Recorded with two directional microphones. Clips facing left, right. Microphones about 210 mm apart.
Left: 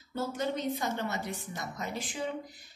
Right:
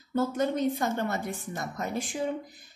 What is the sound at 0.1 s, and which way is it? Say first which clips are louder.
A woman's voice: right 6 dB; 50° right (ahead or behind).